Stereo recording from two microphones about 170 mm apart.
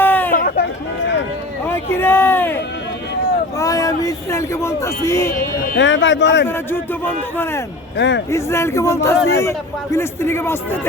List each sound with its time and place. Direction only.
0.0 s hubbub: 10° left (ahead or behind)
0.3 s hubbub: 55° left (ahead or behind)
1.6 s speech: 15° left (ahead or behind)
3.6 s a man's voice: 20° left (ahead or behind)
5.7 s speech: 90° left
6.5 s a man's voice: 15° left (ahead or behind)
7.9 s speech: 90° left
8.3 s a man's voice: 15° left (ahead or behind)